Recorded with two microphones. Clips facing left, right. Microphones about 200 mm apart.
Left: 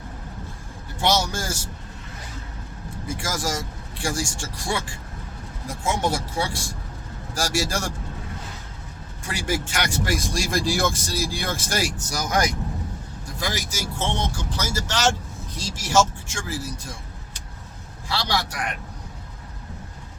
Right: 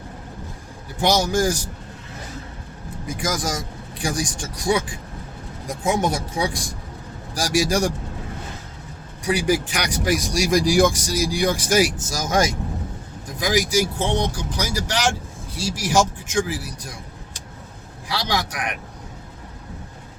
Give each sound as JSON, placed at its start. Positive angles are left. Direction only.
{"t": 1.0, "sound": "speech", "side_deg": -15}
{"t": 3.1, "sound": "speech", "side_deg": -20}
{"t": 9.2, "sound": "speech", "side_deg": -15}
{"t": 13.2, "sound": "speech", "side_deg": -15}
{"t": 18.1, "sound": "speech", "side_deg": -20}